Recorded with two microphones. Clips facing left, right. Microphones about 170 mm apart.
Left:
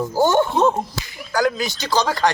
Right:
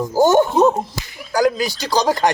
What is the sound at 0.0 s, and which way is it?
Speech, 15° right (ahead or behind).